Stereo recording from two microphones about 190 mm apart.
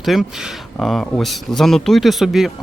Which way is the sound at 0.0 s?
Centre (ahead or behind).